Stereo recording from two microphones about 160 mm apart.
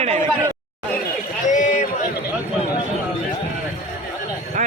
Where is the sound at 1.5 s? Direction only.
50° left (ahead or behind).